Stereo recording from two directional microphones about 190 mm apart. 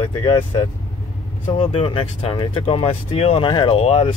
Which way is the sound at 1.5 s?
30° left (ahead or behind).